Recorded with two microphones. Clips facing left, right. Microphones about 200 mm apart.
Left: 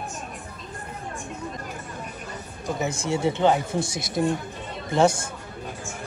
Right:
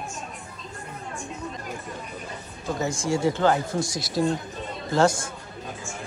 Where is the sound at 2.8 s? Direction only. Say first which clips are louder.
Right 1 dB; 20° left (ahead or behind).